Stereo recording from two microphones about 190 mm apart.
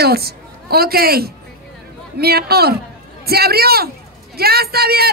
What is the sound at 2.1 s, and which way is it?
Female singing, 55° right (ahead or behind).